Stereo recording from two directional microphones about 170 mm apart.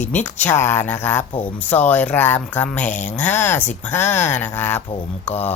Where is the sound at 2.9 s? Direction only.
45° left (ahead or behind).